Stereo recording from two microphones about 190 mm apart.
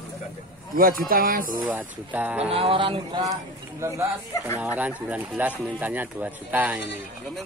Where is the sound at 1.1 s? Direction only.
50° right (ahead or behind).